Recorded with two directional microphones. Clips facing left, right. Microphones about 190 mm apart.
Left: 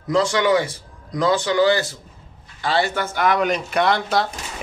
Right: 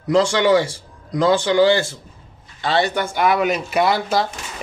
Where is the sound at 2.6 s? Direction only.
20° right (ahead or behind).